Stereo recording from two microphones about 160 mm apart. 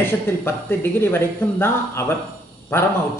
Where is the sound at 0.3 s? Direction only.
15° left (ahead or behind).